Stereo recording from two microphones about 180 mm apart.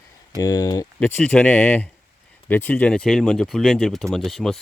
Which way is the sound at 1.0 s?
5° left (ahead or behind).